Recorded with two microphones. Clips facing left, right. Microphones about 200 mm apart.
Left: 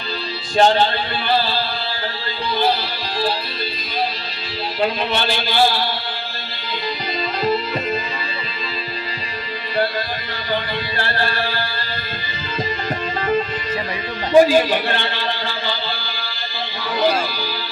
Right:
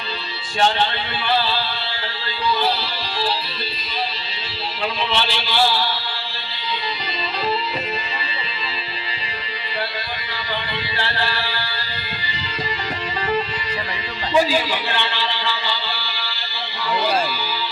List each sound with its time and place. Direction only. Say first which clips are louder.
0.5 s music: left 5 dB; 40° left (ahead or behind)
4.8 s a man's voice: left 3 dB; 50° left (ahead or behind)
10.9 s a man's voice: left 2 dB; 45° left (ahead or behind)
14.3 s a man's voice: left 7 dB; 50° left (ahead or behind)